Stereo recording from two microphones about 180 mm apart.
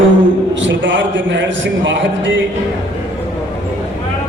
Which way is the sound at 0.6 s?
90° right.